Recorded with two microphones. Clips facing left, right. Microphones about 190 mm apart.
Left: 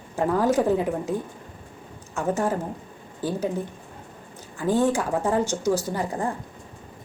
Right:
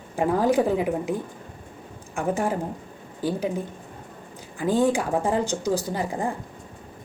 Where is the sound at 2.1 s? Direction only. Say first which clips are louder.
Even; 15° right (ahead or behind).